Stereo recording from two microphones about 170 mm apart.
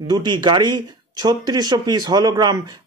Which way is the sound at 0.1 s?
25° right (ahead or behind).